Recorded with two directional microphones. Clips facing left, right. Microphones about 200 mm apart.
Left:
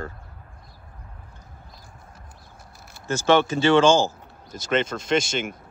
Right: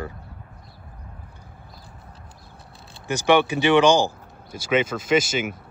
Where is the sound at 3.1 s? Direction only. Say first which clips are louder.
Right 1 dB; 15° right (ahead or behind).